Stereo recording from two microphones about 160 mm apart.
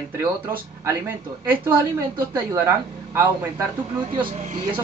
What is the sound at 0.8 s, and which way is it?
A woman's voice, 15° right (ahead or behind).